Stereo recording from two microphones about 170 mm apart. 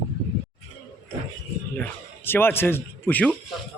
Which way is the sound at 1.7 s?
10° left (ahead or behind).